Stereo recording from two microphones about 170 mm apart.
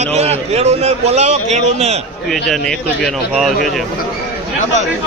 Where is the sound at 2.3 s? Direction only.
Centre (ahead or behind).